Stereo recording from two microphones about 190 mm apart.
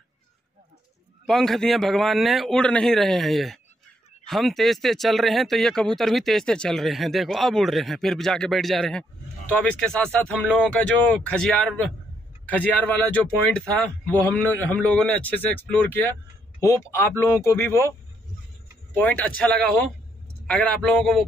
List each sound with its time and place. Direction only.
1.2 s a man's voice: centre (ahead or behind)
18.9 s a man's voice: 5° left (ahead or behind)